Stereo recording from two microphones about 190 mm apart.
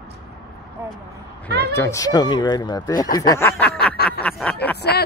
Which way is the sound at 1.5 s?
60° right (ahead or behind).